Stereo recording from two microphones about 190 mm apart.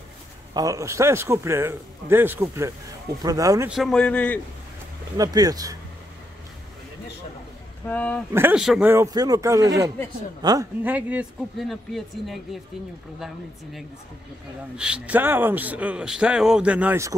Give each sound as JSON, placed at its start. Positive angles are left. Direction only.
{"t": 0.6, "sound": "speech", "side_deg": -15}
{"t": 3.6, "sound": "speech", "side_deg": 0}
{"t": 5.1, "sound": "speech", "side_deg": -20}
{"t": 7.8, "sound": "speech", "side_deg": 10}
{"t": 8.3, "sound": "speech", "side_deg": -10}
{"t": 10.8, "sound": "speech", "side_deg": -10}
{"t": 14.8, "sound": "speech", "side_deg": -5}